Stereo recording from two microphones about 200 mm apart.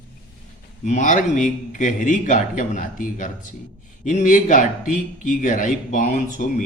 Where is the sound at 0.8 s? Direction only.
35° left (ahead or behind).